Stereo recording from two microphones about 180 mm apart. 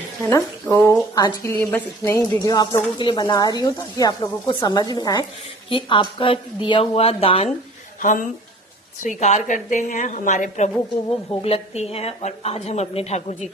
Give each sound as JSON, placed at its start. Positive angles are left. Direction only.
{"t": 0.2, "sound": "a woman's voice", "side_deg": 15}
{"t": 8.0, "sound": "a woman's voice", "side_deg": 45}